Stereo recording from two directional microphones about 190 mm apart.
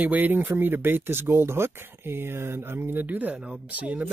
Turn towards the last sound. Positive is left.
turn(degrees=-10)  # may be behind; listen again after turning